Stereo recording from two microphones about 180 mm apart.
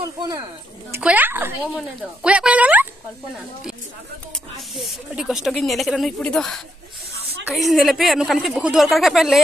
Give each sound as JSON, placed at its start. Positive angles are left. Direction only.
{"t": 0.0, "sound": "speech", "side_deg": -20}
{"t": 0.9, "sound": "speech", "side_deg": -10}
{"t": 4.6, "sound": "speech", "side_deg": 0}